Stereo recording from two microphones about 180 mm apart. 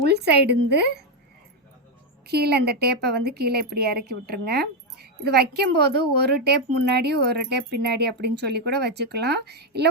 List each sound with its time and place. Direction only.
0.1 s a woman's voice: 65° right (ahead or behind)
2.2 s a woman's voice: 65° right (ahead or behind)